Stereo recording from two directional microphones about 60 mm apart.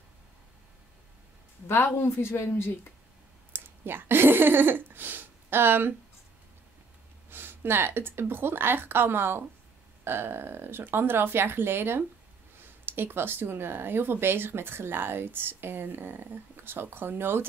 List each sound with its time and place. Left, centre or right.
1.7 s speech: left
3.5 s speech: right
7.2 s speech: right